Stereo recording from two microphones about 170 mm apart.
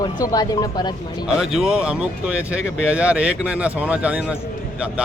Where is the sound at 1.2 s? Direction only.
5° right (ahead or behind).